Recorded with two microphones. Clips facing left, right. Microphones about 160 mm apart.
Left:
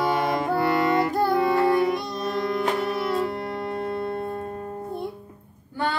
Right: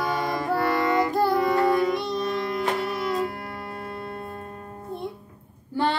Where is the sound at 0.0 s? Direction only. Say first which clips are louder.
Left 3 dB; 20° left (ahead or behind).